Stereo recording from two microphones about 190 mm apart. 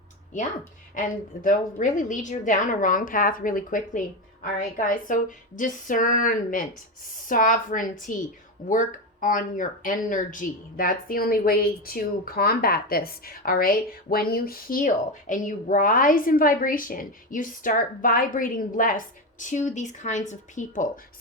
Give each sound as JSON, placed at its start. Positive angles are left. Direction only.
{"t": 0.9, "sound": "speech", "side_deg": 45}